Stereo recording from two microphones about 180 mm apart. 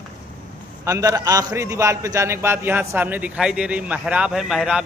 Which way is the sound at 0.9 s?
20° right (ahead or behind).